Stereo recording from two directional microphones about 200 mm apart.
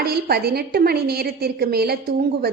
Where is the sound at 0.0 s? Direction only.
50° right (ahead or behind).